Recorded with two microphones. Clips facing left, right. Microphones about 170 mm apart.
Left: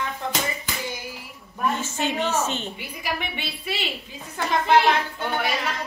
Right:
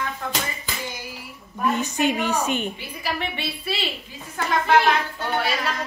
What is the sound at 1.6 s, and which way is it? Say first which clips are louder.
A woman's voice: right 3 dB; 15° right (ahead or behind).